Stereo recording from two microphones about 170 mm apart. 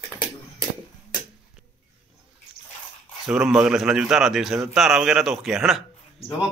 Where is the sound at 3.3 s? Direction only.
5° right (ahead or behind).